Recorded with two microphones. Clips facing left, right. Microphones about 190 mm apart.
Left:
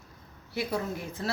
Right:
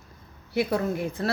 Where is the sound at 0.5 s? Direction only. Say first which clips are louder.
Right 6 dB; 60° right (ahead or behind).